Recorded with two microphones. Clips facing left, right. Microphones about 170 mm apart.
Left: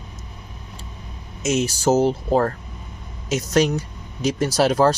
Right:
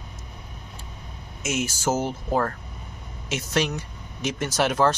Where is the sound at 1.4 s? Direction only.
35° left (ahead or behind).